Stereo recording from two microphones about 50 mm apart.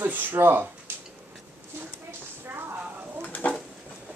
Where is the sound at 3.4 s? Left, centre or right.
Left.